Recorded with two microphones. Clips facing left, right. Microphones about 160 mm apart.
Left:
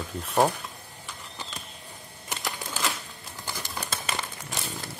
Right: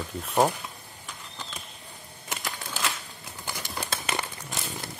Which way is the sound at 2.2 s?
Centre (ahead or behind).